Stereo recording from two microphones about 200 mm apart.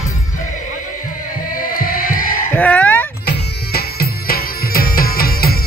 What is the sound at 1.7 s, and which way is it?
Music, 45° left (ahead or behind).